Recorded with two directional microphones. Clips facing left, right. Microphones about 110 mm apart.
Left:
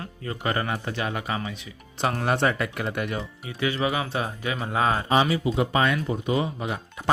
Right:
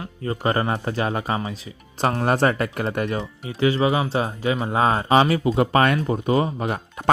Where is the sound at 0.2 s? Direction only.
35° right (ahead or behind).